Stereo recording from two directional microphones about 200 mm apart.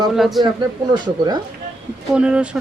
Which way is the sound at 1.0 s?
20° right (ahead or behind).